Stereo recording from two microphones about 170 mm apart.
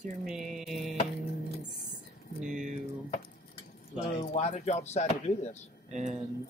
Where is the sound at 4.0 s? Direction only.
40° left (ahead or behind).